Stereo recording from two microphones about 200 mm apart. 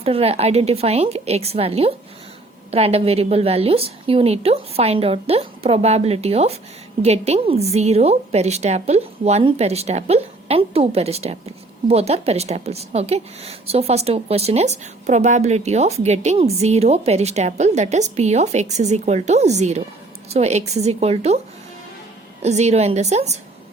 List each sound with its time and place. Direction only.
0.0 s a woman's voice: 30° right (ahead or behind)
22.4 s a woman's voice: 35° right (ahead or behind)